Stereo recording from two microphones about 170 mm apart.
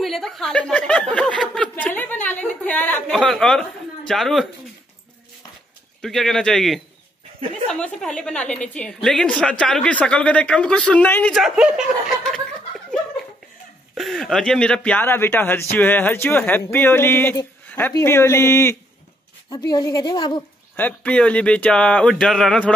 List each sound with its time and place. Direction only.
0.0 s a sound: centre (ahead or behind)
4.1 s a woman's voice: centre (ahead or behind)
5.9 s a woman's voice: centre (ahead or behind)
13.9 s speech: centre (ahead or behind); by 20.4 s 25° left (ahead or behind)
20.7 s speech: 10° left (ahead or behind)